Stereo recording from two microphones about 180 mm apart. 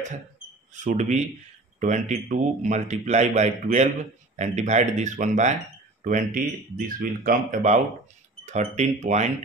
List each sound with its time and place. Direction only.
0.7 s a man's voice: 40° right (ahead or behind)